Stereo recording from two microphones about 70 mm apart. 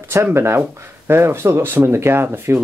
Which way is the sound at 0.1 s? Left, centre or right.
Right.